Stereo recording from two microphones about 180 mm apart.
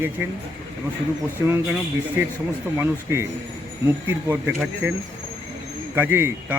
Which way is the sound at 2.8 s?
15° right (ahead or behind).